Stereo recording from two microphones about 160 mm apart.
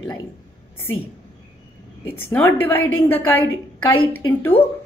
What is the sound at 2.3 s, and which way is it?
Speech, 10° left (ahead or behind).